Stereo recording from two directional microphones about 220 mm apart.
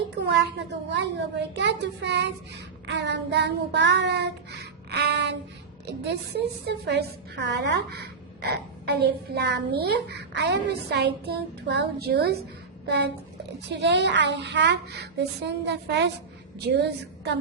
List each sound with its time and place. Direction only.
0.9 s a woman's voice: 50° right (ahead or behind)
2.8 s child singing: 50° right (ahead or behind)
5.8 s a woman's voice: 50° right (ahead or behind)
12.8 s a sound: 50° right (ahead or behind)
13.7 s a woman's voice: 50° right (ahead or behind)